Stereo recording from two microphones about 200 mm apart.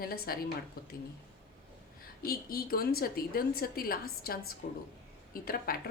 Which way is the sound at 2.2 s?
50° left (ahead or behind).